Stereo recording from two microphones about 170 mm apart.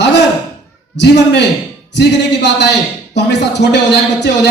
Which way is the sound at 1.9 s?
90° left.